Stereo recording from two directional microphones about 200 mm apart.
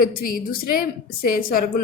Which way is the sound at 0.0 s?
45° left (ahead or behind).